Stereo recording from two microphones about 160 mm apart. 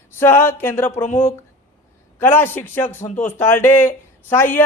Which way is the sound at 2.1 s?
15° left (ahead or behind).